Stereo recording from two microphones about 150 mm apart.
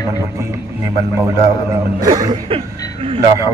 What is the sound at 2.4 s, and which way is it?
Chuckle, 40° right (ahead or behind).